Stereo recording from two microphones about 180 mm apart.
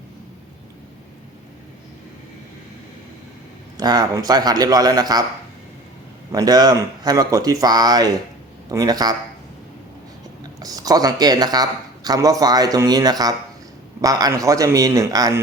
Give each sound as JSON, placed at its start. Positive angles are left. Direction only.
{"t": 3.8, "sound": "speech", "side_deg": -20}
{"t": 6.3, "sound": "speech", "side_deg": -20}
{"t": 10.6, "sound": "speech", "side_deg": -20}